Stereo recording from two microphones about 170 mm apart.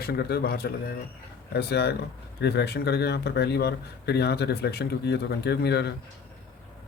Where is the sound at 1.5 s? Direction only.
75° left (ahead or behind).